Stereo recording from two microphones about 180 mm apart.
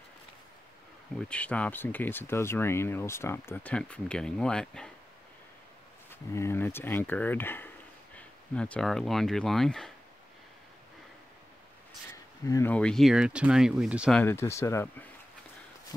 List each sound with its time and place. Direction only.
1.3 s speech: 5° left (ahead or behind)
6.0 s speech: 15° left (ahead or behind)
12.1 s a sound: 15° left (ahead or behind)
12.7 s speech: 5° left (ahead or behind)
14.1 s speech: 10° left (ahead or behind)